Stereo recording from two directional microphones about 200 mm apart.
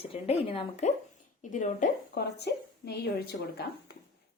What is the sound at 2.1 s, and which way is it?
A woman's voice, 55° left (ahead or behind).